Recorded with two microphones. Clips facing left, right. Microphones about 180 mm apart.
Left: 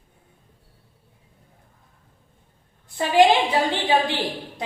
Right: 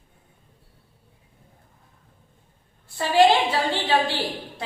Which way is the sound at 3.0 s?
15° left (ahead or behind).